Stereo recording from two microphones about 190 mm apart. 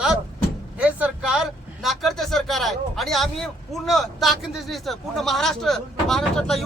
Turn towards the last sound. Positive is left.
turn(degrees=5)  # may be behind; listen again after turning